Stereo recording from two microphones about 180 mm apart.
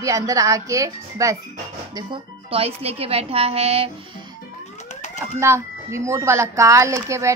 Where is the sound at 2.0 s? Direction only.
30° right (ahead or behind).